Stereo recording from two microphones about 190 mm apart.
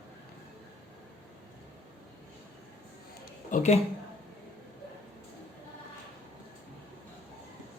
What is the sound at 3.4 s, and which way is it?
Speech, 40° left (ahead or behind).